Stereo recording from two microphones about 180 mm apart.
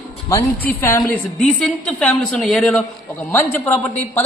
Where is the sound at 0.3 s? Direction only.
15° left (ahead or behind).